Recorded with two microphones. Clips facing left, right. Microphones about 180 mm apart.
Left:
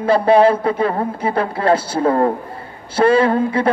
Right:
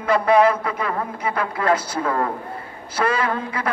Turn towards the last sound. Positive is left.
turn(degrees=30)  # may be behind; listen again after turning